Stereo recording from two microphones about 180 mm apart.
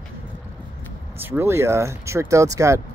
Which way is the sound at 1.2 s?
15° right (ahead or behind).